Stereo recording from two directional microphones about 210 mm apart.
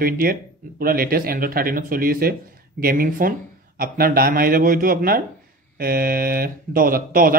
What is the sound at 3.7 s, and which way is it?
Mantra, 45° right (ahead or behind).